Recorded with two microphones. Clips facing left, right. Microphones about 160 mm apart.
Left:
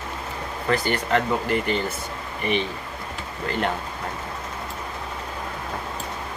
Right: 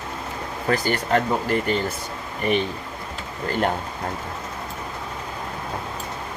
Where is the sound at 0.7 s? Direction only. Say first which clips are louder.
Right 1 dB; 40° right (ahead or behind).